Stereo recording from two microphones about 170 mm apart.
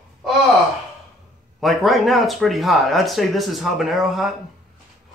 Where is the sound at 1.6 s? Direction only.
Centre (ahead or behind).